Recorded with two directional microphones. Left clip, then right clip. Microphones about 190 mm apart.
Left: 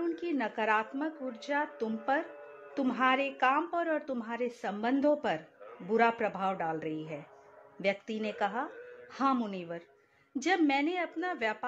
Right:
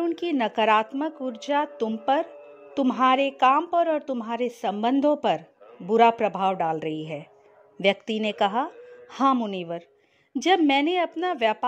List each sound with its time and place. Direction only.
0.0 s speech: 45° right (ahead or behind)